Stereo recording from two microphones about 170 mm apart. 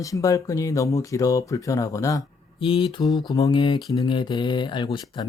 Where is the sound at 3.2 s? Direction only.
20° left (ahead or behind).